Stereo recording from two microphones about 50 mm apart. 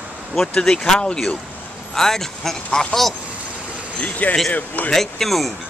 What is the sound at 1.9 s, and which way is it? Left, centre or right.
Speech, centre.